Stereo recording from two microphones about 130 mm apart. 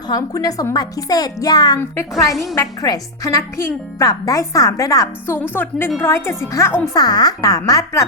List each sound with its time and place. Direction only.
0.1 s a woman's voice: 30° left (ahead or behind)
1.8 s a woman's voice: 20° left (ahead or behind)
6.9 s a woman's voice: 30° left (ahead or behind)